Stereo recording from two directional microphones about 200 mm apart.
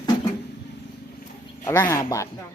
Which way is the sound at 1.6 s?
15° left (ahead or behind).